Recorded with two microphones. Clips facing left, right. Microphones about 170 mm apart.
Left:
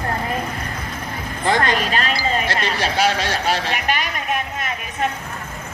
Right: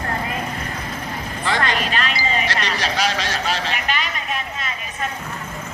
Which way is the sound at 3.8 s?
50° left (ahead or behind).